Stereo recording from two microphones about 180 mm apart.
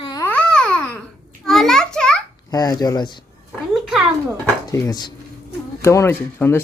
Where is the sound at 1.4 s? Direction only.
Centre (ahead or behind).